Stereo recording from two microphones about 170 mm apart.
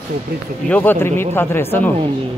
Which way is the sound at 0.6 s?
10° left (ahead or behind).